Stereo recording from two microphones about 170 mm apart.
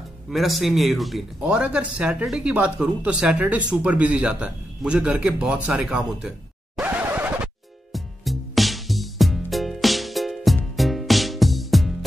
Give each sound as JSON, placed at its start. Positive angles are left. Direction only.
{"t": 0.3, "sound": "a man's voice", "side_deg": 0}
{"t": 6.8, "sound": "scratch", "side_deg": -10}
{"t": 7.9, "sound": "music", "side_deg": 0}